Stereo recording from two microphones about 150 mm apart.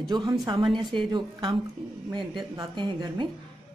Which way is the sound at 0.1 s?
30° right (ahead or behind).